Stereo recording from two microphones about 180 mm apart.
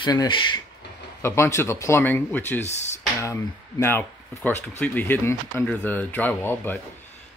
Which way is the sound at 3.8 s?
10° left (ahead or behind).